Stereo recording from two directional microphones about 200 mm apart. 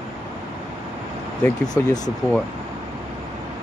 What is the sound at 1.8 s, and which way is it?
Speech, 15° left (ahead or behind).